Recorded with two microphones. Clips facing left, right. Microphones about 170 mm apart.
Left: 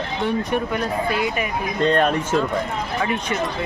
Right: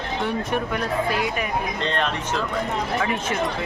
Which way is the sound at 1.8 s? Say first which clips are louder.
Left 7 dB; 45° left (ahead or behind).